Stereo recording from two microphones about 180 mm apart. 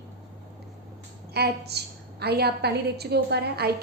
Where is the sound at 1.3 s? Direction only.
65° right (ahead or behind).